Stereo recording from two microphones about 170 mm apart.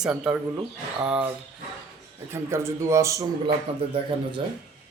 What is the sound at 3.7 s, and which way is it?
Speech, 35° right (ahead or behind).